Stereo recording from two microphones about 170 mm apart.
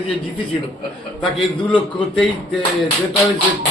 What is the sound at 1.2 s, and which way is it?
Speech, 30° left (ahead or behind).